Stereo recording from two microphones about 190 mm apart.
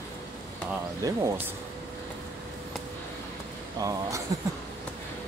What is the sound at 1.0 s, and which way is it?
Speech, 15° right (ahead or behind).